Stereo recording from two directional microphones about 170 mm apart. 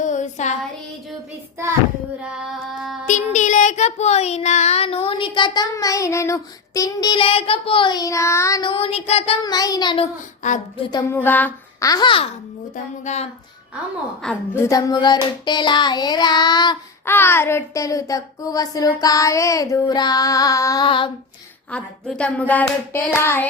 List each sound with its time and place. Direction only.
0.0 s child singing: 45° left (ahead or behind)
2.2 s female singing: 5° right (ahead or behind)
3.1 s child singing: 45° left (ahead or behind); by 8.7 s 20° left (ahead or behind)
8.7 s child singing: 35° left (ahead or behind)
9.4 s child singing: 25° left (ahead or behind)
10.4 s speech: 45° left (ahead or behind)
11.1 s child singing: 10° left (ahead or behind); by 12.3 s 30° left (ahead or behind)
12.7 s speech: 45° left (ahead or behind)
14.2 s child singing: 10° left (ahead or behind); by 16.7 s 25° left (ahead or behind)
17.1 s child singing: 15° left (ahead or behind); by 21.1 s 30° left (ahead or behind)
21.7 s speech: 5° left (ahead or behind)